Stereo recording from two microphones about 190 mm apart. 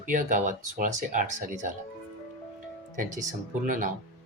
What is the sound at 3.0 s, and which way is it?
Speech, 40° right (ahead or behind).